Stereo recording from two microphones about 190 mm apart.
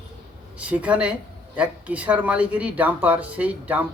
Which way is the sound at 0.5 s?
5° right (ahead or behind).